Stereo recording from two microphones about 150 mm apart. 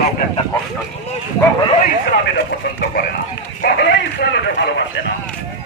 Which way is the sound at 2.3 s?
90° left.